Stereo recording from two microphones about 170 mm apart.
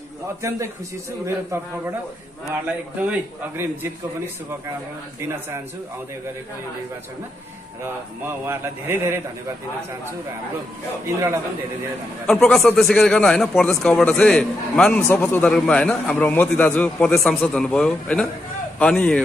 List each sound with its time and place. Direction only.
0.4 s a man's voice: 15° right (ahead or behind)
7.8 s a man's voice: 15° right (ahead or behind)
12.3 s a man's voice: centre (ahead or behind)